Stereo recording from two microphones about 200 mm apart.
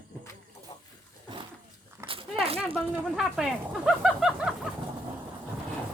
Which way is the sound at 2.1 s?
30° right (ahead or behind).